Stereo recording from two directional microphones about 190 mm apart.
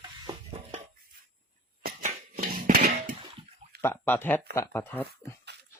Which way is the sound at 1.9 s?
45° right (ahead or behind).